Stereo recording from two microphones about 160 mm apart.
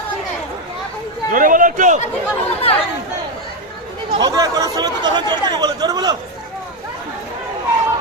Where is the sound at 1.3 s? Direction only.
60° right (ahead or behind).